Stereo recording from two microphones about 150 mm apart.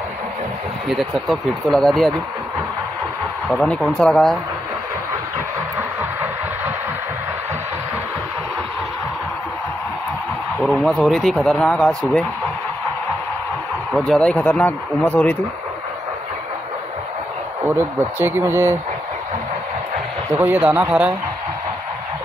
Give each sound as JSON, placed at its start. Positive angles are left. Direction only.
{"t": 0.8, "sound": "speech", "side_deg": 0}
{"t": 3.4, "sound": "speech", "side_deg": 5}
{"t": 10.6, "sound": "speech", "side_deg": 10}
{"t": 13.9, "sound": "speech", "side_deg": 5}
{"t": 17.6, "sound": "speech", "side_deg": -15}
{"t": 20.3, "sound": "speech", "side_deg": -10}